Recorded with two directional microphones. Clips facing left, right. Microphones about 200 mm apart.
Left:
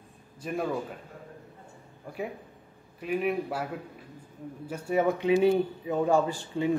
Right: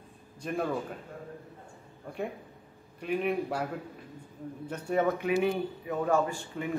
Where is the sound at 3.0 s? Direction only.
Centre (ahead or behind).